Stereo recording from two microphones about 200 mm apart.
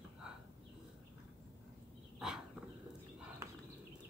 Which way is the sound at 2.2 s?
Centre (ahead or behind).